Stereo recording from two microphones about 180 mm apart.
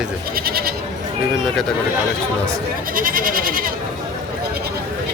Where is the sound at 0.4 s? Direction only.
55° right (ahead or behind).